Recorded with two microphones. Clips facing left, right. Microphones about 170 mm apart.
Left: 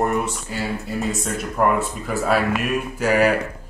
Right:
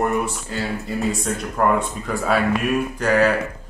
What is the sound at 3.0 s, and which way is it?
Speech, 10° left (ahead or behind).